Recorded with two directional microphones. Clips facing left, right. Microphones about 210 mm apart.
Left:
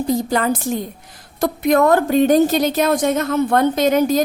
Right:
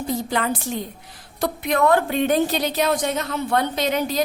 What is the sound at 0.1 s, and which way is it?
A woman's voice, 40° left (ahead or behind).